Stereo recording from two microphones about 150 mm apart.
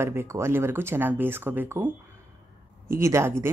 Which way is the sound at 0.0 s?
15° right (ahead or behind).